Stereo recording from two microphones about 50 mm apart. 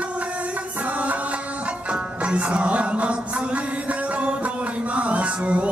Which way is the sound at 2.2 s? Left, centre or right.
Right.